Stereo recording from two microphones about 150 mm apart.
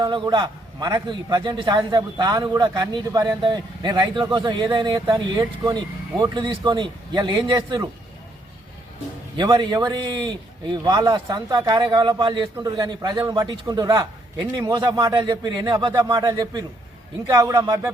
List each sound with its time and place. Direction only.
0.0 s a man's voice: 30° right (ahead or behind)
9.4 s a man's voice: 30° right (ahead or behind)